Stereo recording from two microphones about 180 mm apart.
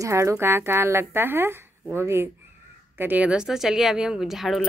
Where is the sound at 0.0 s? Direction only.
15° right (ahead or behind).